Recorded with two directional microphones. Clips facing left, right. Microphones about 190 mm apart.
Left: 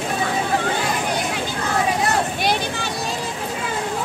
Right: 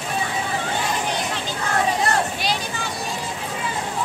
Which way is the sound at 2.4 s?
60° left (ahead or behind).